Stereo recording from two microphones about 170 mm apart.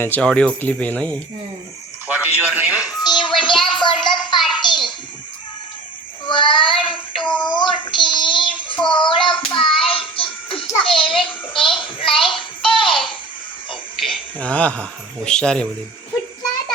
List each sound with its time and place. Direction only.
0.0 s speech: 5° left (ahead or behind)
2.1 s a man's voice: 10° right (ahead or behind)
2.8 s music: 25° left (ahead or behind)
4.4 s a sound: 25° left (ahead or behind)
6.2 s child singing: 30° left (ahead or behind)
12.4 s music: 30° left (ahead or behind)
14.3 s speech: 10° left (ahead or behind)